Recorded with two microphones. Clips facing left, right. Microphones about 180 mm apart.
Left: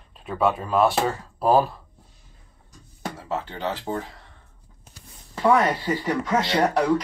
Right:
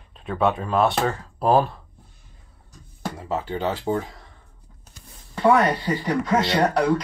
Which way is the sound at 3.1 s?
15° right (ahead or behind).